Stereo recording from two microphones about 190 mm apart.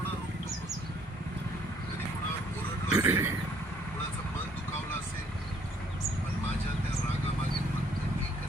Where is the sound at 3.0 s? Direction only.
15° right (ahead or behind).